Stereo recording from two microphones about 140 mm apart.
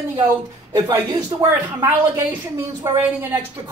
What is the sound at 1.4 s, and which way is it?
A woman's voice, 20° right (ahead or behind).